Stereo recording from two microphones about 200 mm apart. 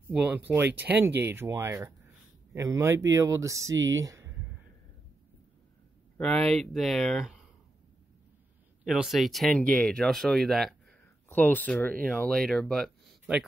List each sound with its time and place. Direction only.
0.0 s speech: 5° right (ahead or behind)
3.7 s speech: 70° right (ahead or behind)
4.0 s a sound: 15° right (ahead or behind)
6.1 s speech: 5° left (ahead or behind)
8.8 s speech: centre (ahead or behind)